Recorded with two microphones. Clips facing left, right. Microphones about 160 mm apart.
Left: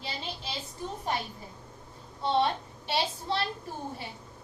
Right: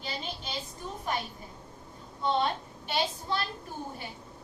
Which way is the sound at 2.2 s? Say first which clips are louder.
Left 2 dB; 30° left (ahead or behind).